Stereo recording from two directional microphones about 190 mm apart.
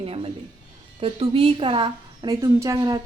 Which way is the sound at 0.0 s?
30° right (ahead or behind).